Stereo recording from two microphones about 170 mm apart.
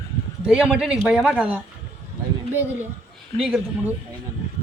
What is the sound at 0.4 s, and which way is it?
A man's voice, 5° right (ahead or behind).